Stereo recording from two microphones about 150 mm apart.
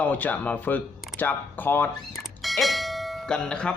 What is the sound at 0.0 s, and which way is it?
Speech, 10° left (ahead or behind).